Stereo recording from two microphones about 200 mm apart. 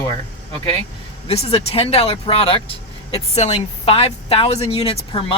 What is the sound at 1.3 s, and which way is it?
Speech, 30° left (ahead or behind).